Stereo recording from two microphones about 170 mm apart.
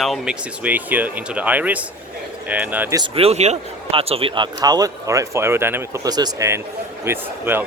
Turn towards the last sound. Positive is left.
turn(degrees=-10)  # may be behind; listen again after turning